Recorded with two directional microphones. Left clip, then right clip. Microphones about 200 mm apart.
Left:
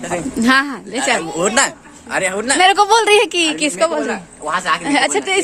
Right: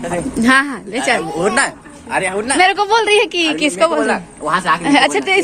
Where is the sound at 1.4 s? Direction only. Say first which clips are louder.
Even; 65° left (ahead or behind).